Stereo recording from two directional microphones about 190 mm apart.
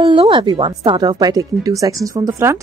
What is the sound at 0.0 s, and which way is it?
A woman's voice, 25° right (ahead or behind).